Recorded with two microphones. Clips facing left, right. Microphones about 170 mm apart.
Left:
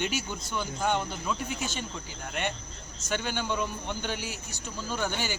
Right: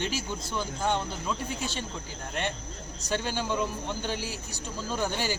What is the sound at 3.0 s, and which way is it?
Speech, 35° right (ahead or behind).